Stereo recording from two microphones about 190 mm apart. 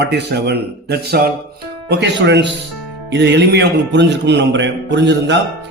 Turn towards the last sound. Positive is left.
turn(degrees=-70)  # may be behind; listen again after turning